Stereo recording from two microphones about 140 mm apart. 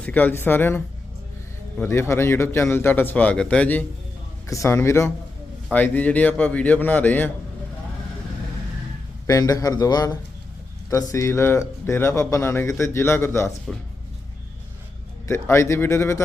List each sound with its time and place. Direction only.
0.0 s a man's voice: 10° left (ahead or behind)
1.8 s a man's voice: 20° left (ahead or behind)
4.4 s a man's voice: 20° left (ahead or behind)
9.2 s speech: 25° left (ahead or behind)
15.3 s speech: 20° left (ahead or behind)